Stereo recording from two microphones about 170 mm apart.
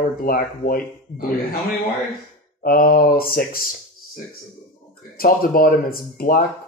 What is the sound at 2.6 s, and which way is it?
Speech, 55° left (ahead or behind).